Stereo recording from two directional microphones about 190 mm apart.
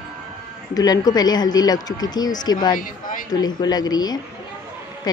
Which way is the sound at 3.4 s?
20° left (ahead or behind).